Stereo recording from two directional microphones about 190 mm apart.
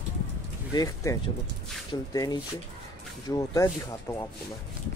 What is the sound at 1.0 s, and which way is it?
Speech, 15° left (ahead or behind).